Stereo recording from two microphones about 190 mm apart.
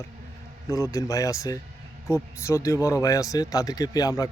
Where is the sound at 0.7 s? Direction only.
15° left (ahead or behind).